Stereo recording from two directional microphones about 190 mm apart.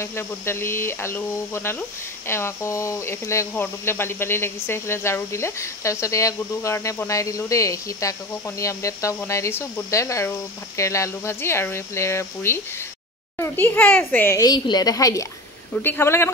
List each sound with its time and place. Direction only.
0.0 s speech: 15° left (ahead or behind)